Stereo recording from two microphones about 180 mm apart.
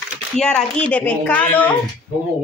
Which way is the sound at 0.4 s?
5° left (ahead or behind).